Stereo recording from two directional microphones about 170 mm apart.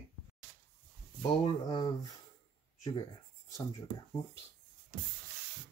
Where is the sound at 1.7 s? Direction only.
25° left (ahead or behind).